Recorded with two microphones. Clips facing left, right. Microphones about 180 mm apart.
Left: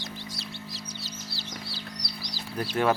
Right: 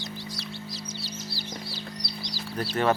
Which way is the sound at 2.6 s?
10° left (ahead or behind).